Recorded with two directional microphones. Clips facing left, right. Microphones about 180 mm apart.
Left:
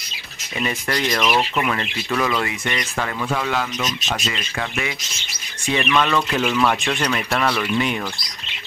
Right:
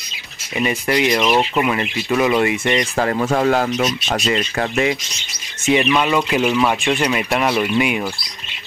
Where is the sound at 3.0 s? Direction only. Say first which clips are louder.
Right 8 dB; 40° right (ahead or behind).